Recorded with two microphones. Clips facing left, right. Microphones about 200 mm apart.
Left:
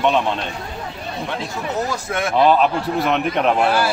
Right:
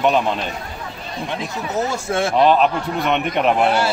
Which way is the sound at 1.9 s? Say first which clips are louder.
Right 2 dB; 30° right (ahead or behind).